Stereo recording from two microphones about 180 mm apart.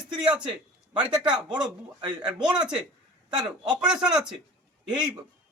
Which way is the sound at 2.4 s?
5° right (ahead or behind).